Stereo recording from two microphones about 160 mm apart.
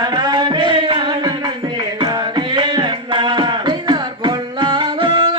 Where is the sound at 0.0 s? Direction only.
25° right (ahead or behind).